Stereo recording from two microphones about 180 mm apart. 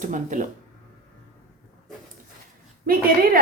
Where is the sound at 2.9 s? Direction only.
50° right (ahead or behind).